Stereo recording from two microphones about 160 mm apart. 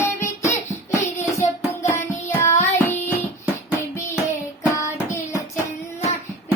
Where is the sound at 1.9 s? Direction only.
15° left (ahead or behind).